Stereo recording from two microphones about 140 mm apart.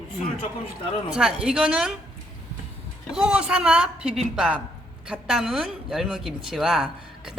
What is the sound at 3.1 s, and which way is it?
A woman's voice, 5° right (ahead or behind).